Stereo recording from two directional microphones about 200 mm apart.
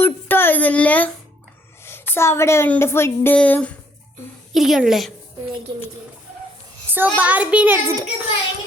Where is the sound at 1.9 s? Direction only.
10° left (ahead or behind).